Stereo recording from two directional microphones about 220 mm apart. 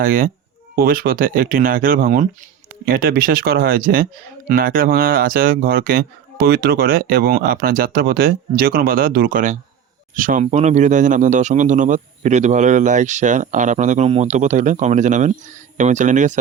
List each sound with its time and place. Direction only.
0.0 s speech: 40° right (ahead or behind)